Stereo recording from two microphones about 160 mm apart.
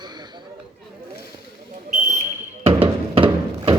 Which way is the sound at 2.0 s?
45° right (ahead or behind).